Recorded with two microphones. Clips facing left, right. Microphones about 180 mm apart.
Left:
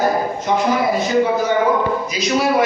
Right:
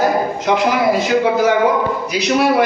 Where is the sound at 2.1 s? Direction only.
65° right (ahead or behind).